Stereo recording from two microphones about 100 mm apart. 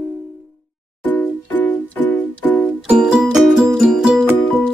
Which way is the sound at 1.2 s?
15° left (ahead or behind).